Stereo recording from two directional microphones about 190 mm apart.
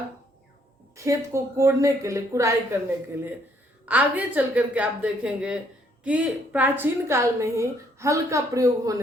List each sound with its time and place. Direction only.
0.9 s a woman's voice: 15° right (ahead or behind)
3.8 s a woman's voice: 10° right (ahead or behind)